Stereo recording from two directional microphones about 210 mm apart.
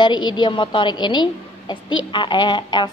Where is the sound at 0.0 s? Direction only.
20° left (ahead or behind).